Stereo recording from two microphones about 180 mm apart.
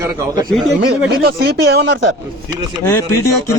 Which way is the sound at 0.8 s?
60° right (ahead or behind).